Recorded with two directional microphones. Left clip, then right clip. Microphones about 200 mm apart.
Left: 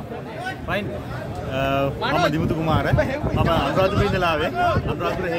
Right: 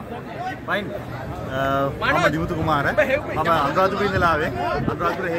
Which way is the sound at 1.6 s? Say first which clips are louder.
Right 1 dB; 10° left (ahead or behind).